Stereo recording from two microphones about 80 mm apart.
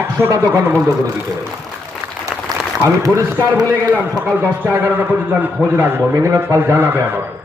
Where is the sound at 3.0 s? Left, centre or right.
Right.